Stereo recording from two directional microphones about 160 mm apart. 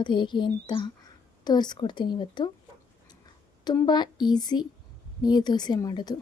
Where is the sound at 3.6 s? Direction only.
25° left (ahead or behind).